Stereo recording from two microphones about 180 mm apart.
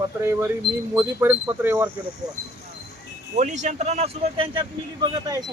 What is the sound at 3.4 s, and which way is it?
A man's voice, 40° right (ahead or behind).